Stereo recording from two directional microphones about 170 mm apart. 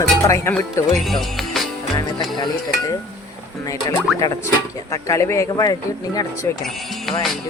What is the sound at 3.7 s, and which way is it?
Speech, 25° left (ahead or behind).